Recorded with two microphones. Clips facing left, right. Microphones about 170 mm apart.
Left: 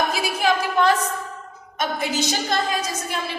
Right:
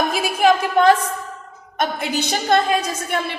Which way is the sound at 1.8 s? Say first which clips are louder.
Right 2 dB; 60° right (ahead or behind).